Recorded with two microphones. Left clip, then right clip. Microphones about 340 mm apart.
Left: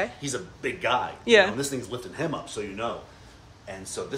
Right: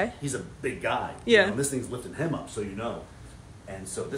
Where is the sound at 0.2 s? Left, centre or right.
Left.